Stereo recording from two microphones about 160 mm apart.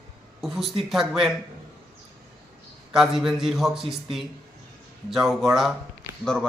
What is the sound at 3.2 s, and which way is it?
Speech, 5° right (ahead or behind).